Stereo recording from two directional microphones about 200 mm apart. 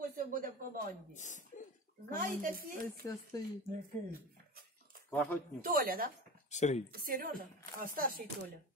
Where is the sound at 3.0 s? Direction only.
15° left (ahead or behind).